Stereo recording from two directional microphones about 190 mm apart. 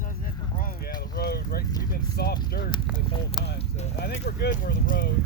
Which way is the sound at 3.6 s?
35° left (ahead or behind).